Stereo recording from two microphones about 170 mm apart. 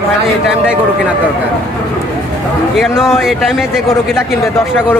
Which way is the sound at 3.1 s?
Centre (ahead or behind).